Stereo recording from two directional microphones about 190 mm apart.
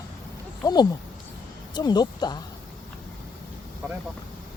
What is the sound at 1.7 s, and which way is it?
Speech, 20° left (ahead or behind).